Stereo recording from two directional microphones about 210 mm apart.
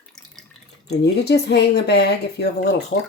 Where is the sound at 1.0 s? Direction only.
50° left (ahead or behind).